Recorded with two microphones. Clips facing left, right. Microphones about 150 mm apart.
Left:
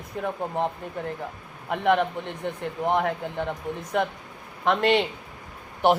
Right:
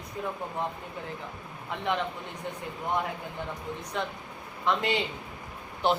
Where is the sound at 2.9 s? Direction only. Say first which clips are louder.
Left 6 dB; 75° left (ahead or behind).